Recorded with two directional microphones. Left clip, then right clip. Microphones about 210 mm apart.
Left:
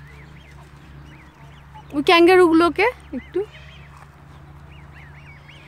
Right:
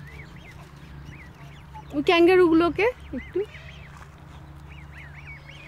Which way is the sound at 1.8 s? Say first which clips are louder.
Left 5 dB; 20° left (ahead or behind).